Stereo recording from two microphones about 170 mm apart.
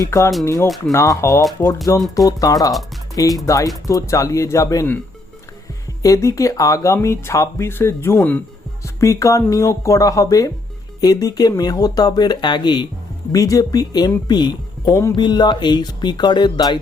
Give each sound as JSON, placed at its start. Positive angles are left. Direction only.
{"t": 0.0, "sound": "speech", "side_deg": 20}
{"t": 6.0, "sound": "speech", "side_deg": 20}